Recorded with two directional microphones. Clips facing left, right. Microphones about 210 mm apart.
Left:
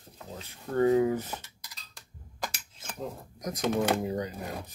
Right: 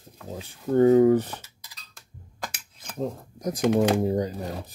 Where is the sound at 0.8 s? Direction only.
35° right (ahead or behind).